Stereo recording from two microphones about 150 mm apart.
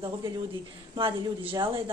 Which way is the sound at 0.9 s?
35° right (ahead or behind).